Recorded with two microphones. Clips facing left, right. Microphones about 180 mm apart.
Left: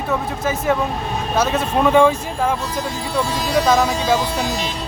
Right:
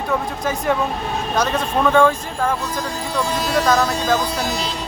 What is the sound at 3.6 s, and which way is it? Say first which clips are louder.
Speech: left 2 dB; 5° left (ahead or behind).